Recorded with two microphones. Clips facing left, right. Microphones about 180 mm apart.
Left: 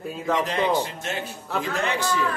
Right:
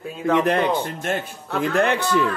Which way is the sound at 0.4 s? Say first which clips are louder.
Right 2 dB; 60° right (ahead or behind).